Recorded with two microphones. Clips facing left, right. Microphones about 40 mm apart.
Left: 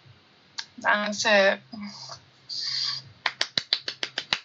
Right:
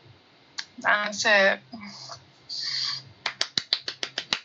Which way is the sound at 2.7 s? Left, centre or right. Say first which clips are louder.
Even; right.